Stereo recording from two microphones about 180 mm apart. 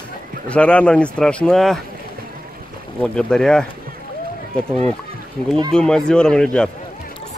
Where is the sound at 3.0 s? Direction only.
5° left (ahead or behind).